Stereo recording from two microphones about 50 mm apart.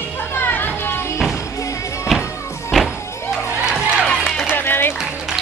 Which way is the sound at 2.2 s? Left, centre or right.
Left.